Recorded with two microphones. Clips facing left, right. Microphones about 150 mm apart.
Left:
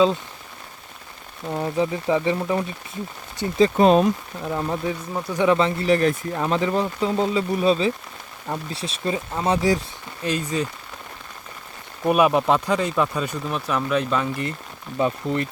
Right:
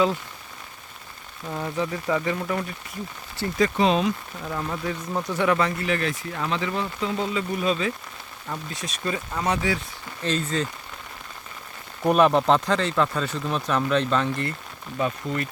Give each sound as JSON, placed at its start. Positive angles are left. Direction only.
{"t": 1.5, "sound": "speech", "side_deg": 25}
{"t": 3.8, "sound": "speech", "side_deg": 50}
{"t": 4.4, "sound": "speech", "side_deg": 20}
{"t": 5.9, "sound": "speech", "side_deg": 35}
{"t": 10.2, "sound": "speech", "side_deg": 15}
{"t": 12.0, "sound": "speech", "side_deg": 10}
{"t": 14.9, "sound": "speech", "side_deg": 25}